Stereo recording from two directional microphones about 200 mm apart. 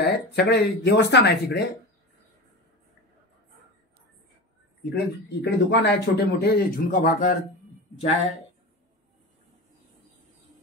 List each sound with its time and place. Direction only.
0.0 s speech: 55° left (ahead or behind)
4.8 s speech: 60° left (ahead or behind); by 7.3 s 40° left (ahead or behind)